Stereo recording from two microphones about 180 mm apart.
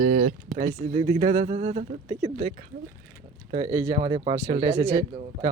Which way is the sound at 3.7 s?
15° right (ahead or behind).